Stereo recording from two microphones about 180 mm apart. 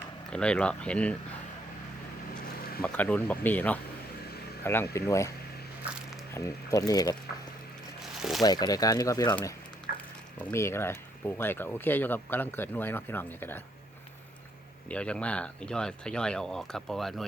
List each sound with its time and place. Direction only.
0.3 s speech: 5° left (ahead or behind)
2.8 s speech: 10° left (ahead or behind)
6.3 s speech: 15° left (ahead or behind)
8.4 s speech: 20° left (ahead or behind)
9.9 s a sound: 50° left (ahead or behind)
10.3 s speech: 15° left (ahead or behind)
14.8 s speech: 5° left (ahead or behind)